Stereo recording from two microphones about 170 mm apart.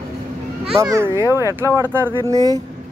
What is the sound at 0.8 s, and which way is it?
Speech, 20° right (ahead or behind).